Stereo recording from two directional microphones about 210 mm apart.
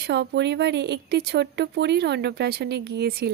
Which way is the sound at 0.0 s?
55° right (ahead or behind).